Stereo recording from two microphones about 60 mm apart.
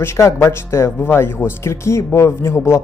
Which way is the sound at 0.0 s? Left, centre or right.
Left.